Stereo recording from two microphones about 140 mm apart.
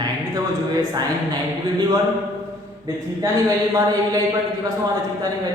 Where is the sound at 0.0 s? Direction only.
25° right (ahead or behind).